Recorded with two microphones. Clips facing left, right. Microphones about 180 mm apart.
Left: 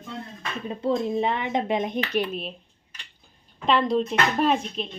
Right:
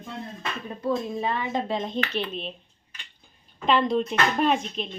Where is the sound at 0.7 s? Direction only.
25° left (ahead or behind); by 2.6 s 5° left (ahead or behind).